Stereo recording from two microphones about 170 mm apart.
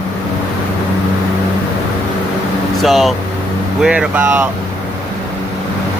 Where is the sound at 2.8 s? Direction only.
Centre (ahead or behind).